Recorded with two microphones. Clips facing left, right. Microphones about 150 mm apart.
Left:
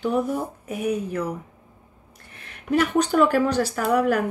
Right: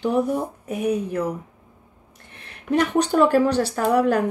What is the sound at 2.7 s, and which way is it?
Speech, 35° right (ahead or behind).